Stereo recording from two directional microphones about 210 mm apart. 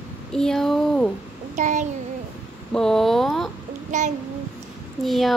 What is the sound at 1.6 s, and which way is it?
Child singing, 35° right (ahead or behind).